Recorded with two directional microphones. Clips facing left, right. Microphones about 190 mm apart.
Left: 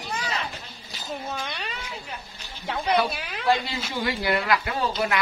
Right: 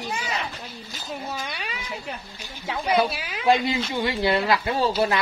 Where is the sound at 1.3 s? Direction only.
5° right (ahead or behind).